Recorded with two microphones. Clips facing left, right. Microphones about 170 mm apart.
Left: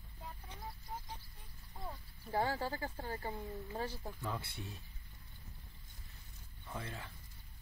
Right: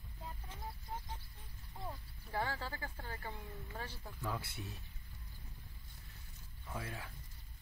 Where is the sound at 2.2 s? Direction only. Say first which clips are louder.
Left 4 dB; 20° left (ahead or behind).